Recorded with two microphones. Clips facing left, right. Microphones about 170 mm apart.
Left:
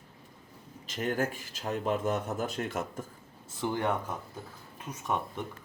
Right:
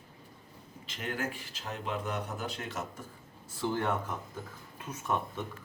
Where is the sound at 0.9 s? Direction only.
45° left (ahead or behind).